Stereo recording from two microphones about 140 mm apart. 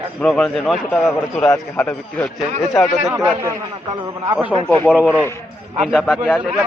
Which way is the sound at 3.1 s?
20° right (ahead or behind).